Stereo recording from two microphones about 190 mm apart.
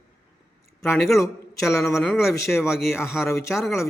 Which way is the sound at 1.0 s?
Centre (ahead or behind).